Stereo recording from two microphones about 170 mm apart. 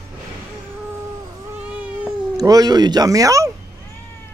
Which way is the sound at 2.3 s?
20° right (ahead or behind).